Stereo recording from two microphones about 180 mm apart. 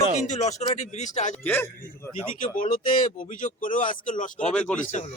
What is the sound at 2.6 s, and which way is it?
Speech, 50° left (ahead or behind).